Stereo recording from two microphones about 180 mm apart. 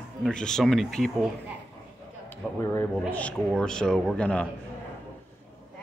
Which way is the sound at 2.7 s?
10° left (ahead or behind).